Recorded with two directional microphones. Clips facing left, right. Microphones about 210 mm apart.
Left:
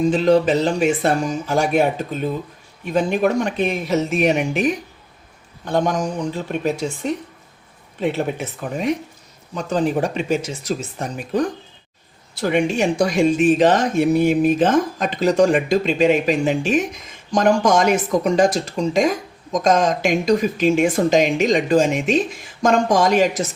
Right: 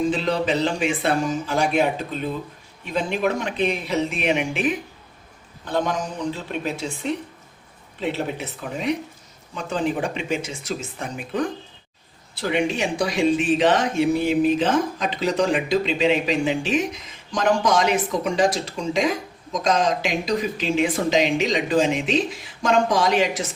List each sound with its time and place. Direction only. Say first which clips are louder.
0.1 s speech: left 7 dB; 45° left (ahead or behind)